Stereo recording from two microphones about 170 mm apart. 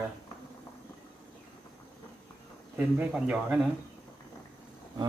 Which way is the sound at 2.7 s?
10° right (ahead or behind).